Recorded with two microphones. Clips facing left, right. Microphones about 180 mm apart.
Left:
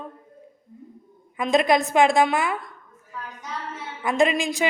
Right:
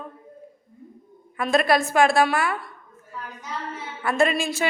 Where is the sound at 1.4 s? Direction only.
20° left (ahead or behind).